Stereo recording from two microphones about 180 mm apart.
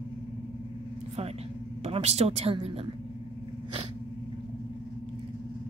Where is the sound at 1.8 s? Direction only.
35° right (ahead or behind).